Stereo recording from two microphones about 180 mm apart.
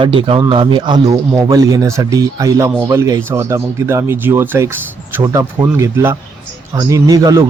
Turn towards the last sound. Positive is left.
turn(degrees=-20)  # may be behind; listen again after turning